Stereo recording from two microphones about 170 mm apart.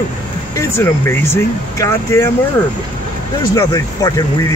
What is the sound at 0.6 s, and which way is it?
Speech, 15° left (ahead or behind).